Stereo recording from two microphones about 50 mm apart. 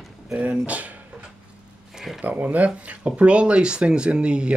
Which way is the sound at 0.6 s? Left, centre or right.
Right.